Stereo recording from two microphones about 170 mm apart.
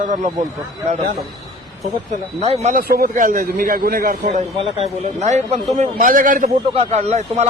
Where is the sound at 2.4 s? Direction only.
40° right (ahead or behind).